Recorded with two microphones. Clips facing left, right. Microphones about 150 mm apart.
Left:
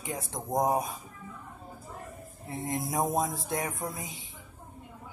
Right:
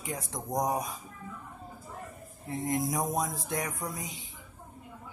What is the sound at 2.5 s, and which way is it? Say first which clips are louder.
Speech: right 2 dB; 25° left (ahead or behind).